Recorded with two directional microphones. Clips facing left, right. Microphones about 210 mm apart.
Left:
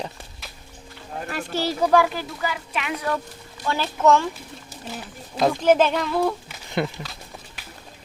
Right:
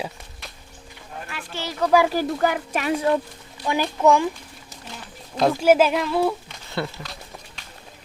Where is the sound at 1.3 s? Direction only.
40° left (ahead or behind).